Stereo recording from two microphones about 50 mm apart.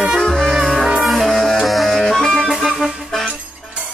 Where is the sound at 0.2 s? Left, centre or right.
Centre.